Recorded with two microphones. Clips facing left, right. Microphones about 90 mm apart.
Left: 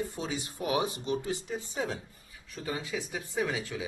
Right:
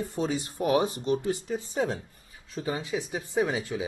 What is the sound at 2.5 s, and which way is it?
Speech, 25° right (ahead or behind).